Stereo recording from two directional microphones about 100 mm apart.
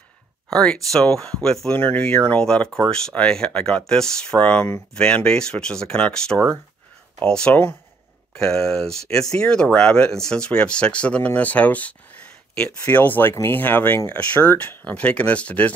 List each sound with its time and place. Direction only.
0.5 s speech: 5° left (ahead or behind)